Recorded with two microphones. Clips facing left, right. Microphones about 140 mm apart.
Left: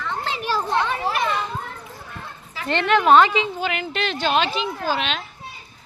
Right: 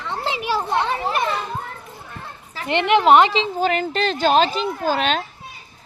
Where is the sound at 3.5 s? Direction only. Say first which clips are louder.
Right 5 dB; 40° right (ahead or behind).